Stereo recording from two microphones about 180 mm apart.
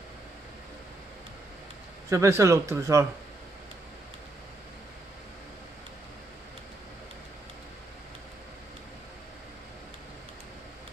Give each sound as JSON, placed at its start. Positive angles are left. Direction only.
{"t": 2.0, "sound": "speech", "side_deg": -15}